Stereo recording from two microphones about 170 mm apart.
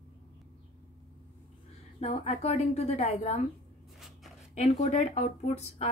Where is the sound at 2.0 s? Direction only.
40° left (ahead or behind).